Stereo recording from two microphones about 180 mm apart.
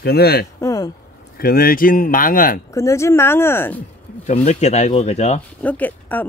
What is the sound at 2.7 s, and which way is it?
Speech, 15° left (ahead or behind).